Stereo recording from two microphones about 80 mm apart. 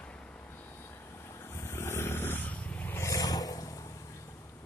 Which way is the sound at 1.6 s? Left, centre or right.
Left.